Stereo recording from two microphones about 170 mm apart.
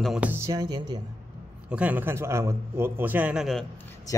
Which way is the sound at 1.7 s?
10° right (ahead or behind).